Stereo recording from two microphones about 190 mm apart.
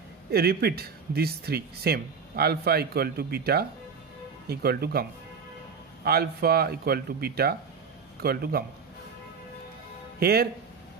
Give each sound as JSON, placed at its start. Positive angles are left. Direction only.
{"t": 0.3, "sound": "speech", "side_deg": -55}
{"t": 6.0, "sound": "speech", "side_deg": -55}
{"t": 10.2, "sound": "speech", "side_deg": -55}